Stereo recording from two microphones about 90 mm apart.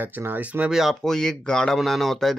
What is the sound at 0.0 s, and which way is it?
Speech, 20° right (ahead or behind).